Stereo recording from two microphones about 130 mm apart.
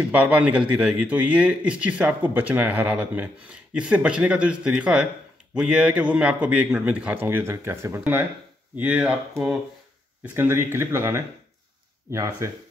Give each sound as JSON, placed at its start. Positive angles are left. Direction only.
{"t": 0.1, "sound": "speech", "side_deg": -10}
{"t": 10.2, "sound": "speech", "side_deg": -15}